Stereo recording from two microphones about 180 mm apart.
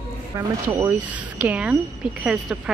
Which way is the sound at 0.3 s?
15° right (ahead or behind).